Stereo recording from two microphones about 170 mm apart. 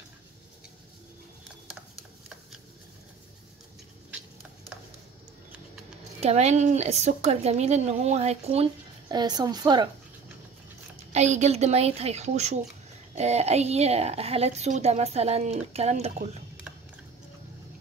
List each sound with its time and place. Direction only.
6.2 s a woman's voice: 40° right (ahead or behind)
9.1 s a woman's voice: 25° right (ahead or behind)
11.1 s a woman's voice: 40° right (ahead or behind)